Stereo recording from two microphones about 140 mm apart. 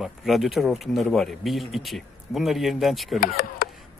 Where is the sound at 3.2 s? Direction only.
90° left.